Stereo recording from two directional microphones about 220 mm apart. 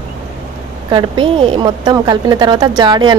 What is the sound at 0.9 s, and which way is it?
A woman's voice, 25° right (ahead or behind).